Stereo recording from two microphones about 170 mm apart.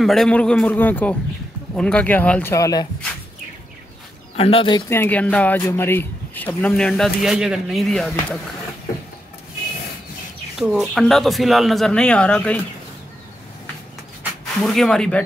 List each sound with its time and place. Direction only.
0.0 s a man's voice: centre (ahead or behind)
2.5 s speech: 20° left (ahead or behind)
4.4 s speech: 35° left (ahead or behind)
4.8 s a man's voice: 15° left (ahead or behind)
10.6 s speech: centre (ahead or behind)
14.6 s speech: 5° left (ahead or behind)